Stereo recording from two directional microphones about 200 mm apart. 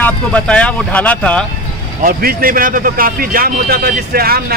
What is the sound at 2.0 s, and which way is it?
A man's voice, 45° right (ahead or behind).